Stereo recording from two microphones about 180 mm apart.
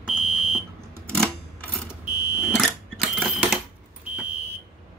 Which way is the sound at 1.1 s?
5° left (ahead or behind).